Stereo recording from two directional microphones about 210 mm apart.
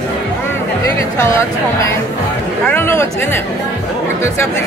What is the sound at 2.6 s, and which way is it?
Speech, 10° left (ahead or behind).